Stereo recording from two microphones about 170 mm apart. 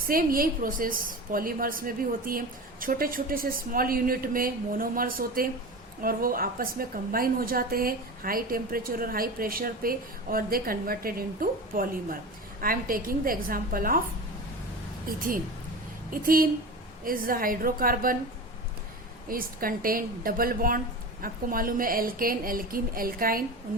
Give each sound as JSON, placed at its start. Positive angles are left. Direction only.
{"t": 0.0, "sound": "a woman's voice", "side_deg": -55}
{"t": 16.1, "sound": "a woman's voice", "side_deg": -55}
{"t": 19.3, "sound": "a woman's voice", "side_deg": -55}